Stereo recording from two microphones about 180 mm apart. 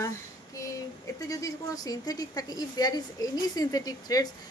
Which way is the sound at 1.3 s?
20° left (ahead or behind).